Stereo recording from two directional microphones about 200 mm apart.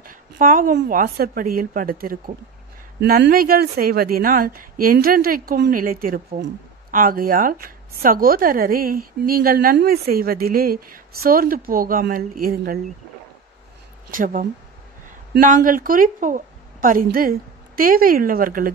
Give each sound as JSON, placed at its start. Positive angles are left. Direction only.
{"t": 0.0, "sound": "a sound", "side_deg": -40}
{"t": 0.8, "sound": "speech", "side_deg": -45}
{"t": 14.1, "sound": "speech", "side_deg": -40}